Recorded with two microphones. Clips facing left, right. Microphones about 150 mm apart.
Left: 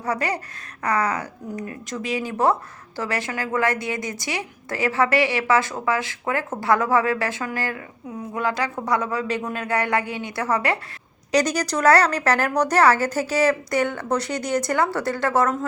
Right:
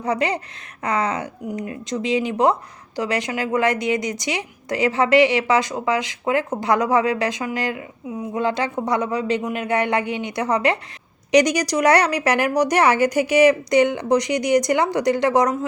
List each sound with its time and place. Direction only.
0.0 s a woman's voice: 20° right (ahead or behind)